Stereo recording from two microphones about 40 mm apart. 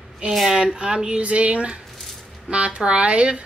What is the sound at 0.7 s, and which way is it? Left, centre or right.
Speech, right.